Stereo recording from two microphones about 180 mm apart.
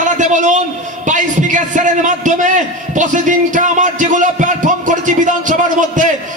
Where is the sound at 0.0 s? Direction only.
45° right (ahead or behind).